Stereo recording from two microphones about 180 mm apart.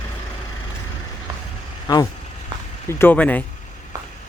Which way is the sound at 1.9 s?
20° left (ahead or behind).